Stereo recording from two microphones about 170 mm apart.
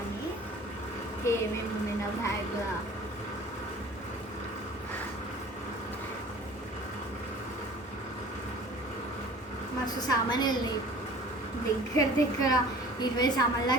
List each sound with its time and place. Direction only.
1.2 s a sound: 15° left (ahead or behind)
9.8 s a woman's voice: 25° left (ahead or behind)
11.9 s a woman's voice: 20° left (ahead or behind)